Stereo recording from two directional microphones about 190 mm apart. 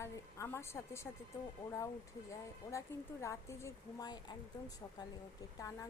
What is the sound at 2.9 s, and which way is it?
A woman's voice, 10° left (ahead or behind).